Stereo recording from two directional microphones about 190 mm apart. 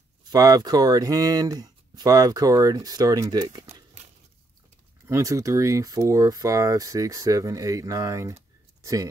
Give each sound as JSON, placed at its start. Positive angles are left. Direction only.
{"t": 0.2, "sound": "speech", "side_deg": -20}
{"t": 5.0, "sound": "speech", "side_deg": -15}